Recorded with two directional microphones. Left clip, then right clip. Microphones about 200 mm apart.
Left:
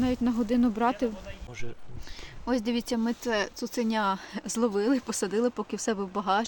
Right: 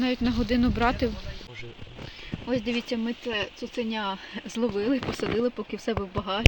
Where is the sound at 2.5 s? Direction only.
30° left (ahead or behind).